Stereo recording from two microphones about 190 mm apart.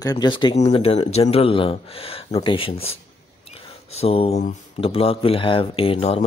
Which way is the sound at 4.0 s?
30° left (ahead or behind).